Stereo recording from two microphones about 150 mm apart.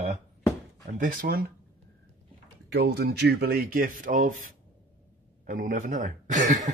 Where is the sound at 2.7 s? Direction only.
90° right; by 4.3 s 65° right (ahead or behind).